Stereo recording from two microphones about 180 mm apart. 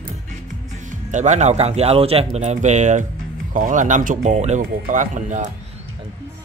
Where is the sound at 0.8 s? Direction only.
45° right (ahead or behind).